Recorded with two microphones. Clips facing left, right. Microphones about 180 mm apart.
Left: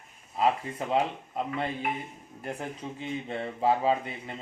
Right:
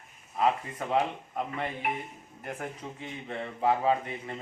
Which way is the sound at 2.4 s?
30° left (ahead or behind).